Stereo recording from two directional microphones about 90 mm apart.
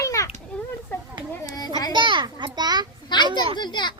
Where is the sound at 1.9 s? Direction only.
60° right (ahead or behind).